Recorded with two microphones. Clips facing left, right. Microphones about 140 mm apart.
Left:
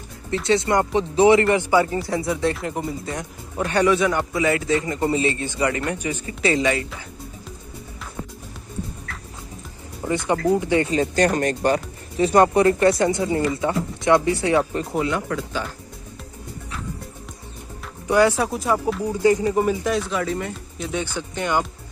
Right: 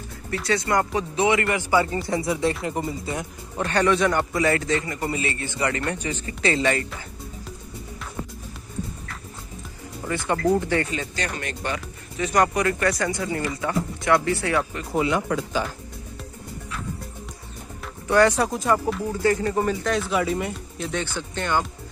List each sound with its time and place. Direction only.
0.3 s speech: 25° left (ahead or behind)
1.9 s speech: centre (ahead or behind)
3.5 s a man's voice: 10° left (ahead or behind)
4.8 s a man's voice: 25° left (ahead or behind); by 7.1 s 5° left (ahead or behind)
10.0 s a man's voice: 20° left (ahead or behind)
10.9 s speech: 35° left (ahead or behind); by 14.7 s 20° left (ahead or behind)
15.0 s speech: 10° right (ahead or behind)
18.0 s a man's voice: 10° left (ahead or behind)
20.0 s speech: 5° right (ahead or behind)
20.7 s speech: centre (ahead or behind)
21.0 s a man's voice: 10° left (ahead or behind)